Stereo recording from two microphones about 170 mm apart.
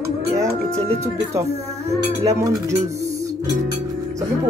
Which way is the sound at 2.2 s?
20° right (ahead or behind).